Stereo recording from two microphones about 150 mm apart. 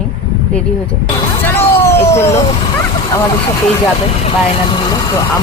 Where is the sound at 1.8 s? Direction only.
15° left (ahead or behind).